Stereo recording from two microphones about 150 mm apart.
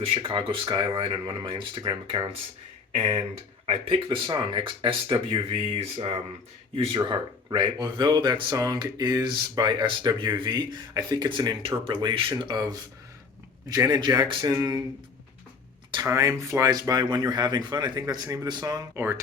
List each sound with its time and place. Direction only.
0.0 s speech: 35° right (ahead or behind)
2.9 s speech: 40° right (ahead or behind); by 14.8 s 25° right (ahead or behind)
16.0 s speech: 20° right (ahead or behind)